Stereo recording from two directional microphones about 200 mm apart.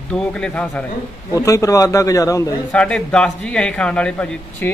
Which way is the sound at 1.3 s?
15° left (ahead or behind).